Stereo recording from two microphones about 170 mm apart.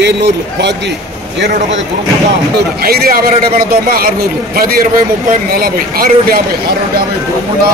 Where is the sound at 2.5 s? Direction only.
65° right (ahead or behind).